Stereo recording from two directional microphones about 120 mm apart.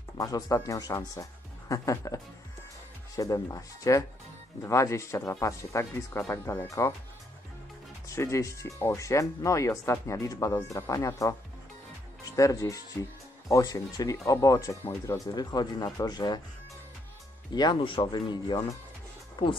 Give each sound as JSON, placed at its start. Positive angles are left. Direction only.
{"t": 0.2, "sound": "speech", "side_deg": 30}
{"t": 8.1, "sound": "speech", "side_deg": 25}
{"t": 12.4, "sound": "speech", "side_deg": 25}
{"t": 17.6, "sound": "speech", "side_deg": 40}